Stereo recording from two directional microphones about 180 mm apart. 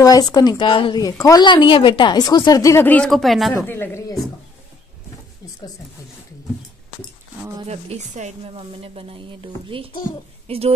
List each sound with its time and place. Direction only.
0.0 s speech: 20° left (ahead or behind); by 3.5 s centre (ahead or behind)
3.6 s speech: 10° left (ahead or behind)
7.6 s a woman's voice: 35° right (ahead or behind)